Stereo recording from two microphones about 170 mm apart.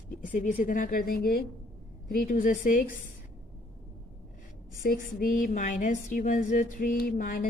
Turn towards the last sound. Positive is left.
turn(degrees=60)  # may be behind; listen again after turning